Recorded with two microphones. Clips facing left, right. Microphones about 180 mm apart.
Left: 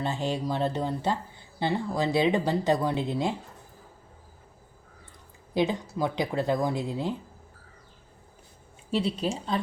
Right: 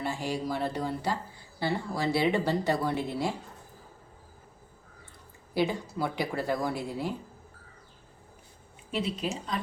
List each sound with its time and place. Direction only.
0.0 s speech: 20° left (ahead or behind)
5.5 s speech: 20° left (ahead or behind)
8.9 s a woman's voice: 30° left (ahead or behind)